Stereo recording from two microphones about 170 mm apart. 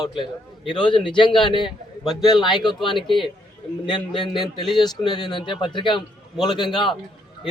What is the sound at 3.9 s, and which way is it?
Speech, 30° left (ahead or behind).